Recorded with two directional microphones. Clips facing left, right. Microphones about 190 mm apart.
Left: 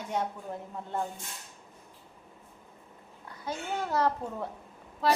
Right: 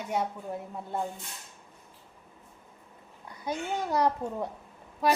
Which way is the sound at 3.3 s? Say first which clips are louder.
Right 3 dB; 15° right (ahead or behind).